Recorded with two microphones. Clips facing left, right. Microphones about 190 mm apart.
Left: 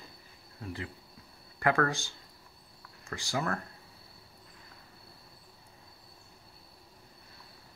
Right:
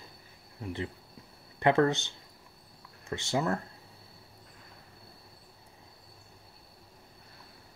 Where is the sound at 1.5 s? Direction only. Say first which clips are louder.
Right 4 dB; 25° right (ahead or behind).